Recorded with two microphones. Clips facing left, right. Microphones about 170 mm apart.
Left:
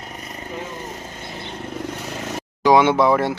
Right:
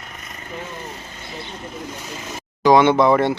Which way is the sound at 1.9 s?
65° left (ahead or behind).